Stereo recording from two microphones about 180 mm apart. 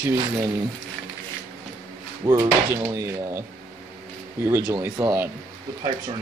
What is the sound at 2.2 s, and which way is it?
Speech, 20° right (ahead or behind).